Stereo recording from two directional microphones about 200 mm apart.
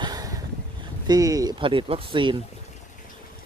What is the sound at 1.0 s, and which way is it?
Speech, 20° right (ahead or behind).